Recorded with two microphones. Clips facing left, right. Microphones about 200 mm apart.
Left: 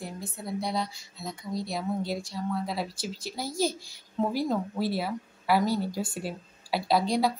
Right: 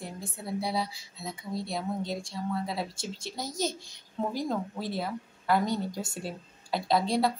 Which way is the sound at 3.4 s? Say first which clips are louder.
Left 4 dB; 20° right (ahead or behind).